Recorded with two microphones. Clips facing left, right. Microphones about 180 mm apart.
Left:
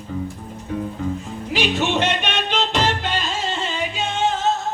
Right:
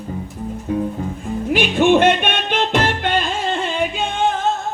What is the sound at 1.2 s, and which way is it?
Music, 55° right (ahead or behind).